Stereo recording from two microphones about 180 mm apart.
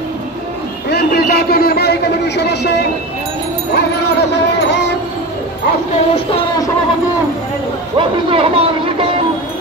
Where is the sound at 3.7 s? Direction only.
70° left (ahead or behind).